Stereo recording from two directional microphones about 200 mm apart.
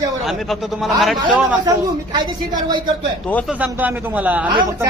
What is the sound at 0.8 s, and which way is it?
Speech, centre (ahead or behind).